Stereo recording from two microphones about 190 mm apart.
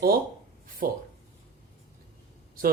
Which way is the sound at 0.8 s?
50° right (ahead or behind).